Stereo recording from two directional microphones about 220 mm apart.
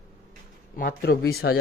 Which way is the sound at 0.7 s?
45° left (ahead or behind).